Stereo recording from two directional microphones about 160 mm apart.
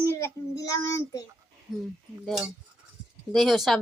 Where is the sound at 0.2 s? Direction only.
20° left (ahead or behind).